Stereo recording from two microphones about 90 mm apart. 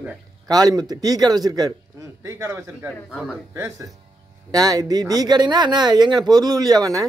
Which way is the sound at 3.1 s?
5° right (ahead or behind).